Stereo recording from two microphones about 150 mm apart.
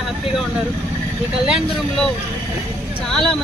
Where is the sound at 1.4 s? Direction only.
Centre (ahead or behind).